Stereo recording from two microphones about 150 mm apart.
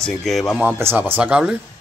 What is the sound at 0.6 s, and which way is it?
Speech, 15° right (ahead or behind).